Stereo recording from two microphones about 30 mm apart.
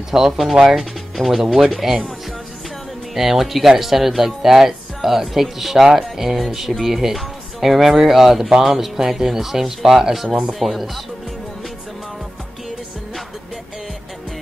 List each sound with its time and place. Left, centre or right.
0.1 s speech: centre
3.2 s speech: centre
10.6 s speech: centre